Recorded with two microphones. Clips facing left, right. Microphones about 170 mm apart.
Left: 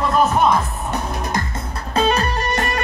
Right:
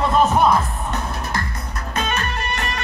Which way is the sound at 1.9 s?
35° left (ahead or behind).